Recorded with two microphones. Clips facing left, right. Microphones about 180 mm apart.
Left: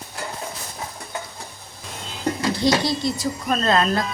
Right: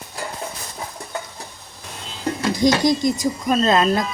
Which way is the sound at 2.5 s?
15° right (ahead or behind).